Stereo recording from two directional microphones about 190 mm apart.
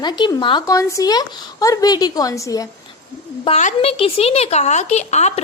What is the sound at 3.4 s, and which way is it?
A woman's voice, 35° left (ahead or behind).